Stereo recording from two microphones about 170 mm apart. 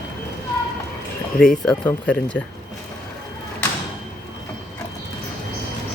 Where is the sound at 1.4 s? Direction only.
5° left (ahead or behind).